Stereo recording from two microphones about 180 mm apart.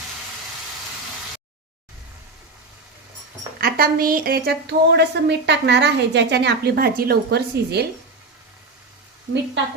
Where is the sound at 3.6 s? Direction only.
55° right (ahead or behind).